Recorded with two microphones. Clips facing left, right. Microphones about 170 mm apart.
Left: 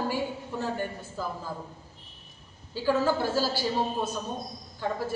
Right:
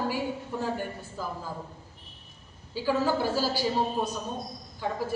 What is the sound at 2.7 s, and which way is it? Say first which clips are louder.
A woman's voice: left 1 dB; 10° right (ahead or behind).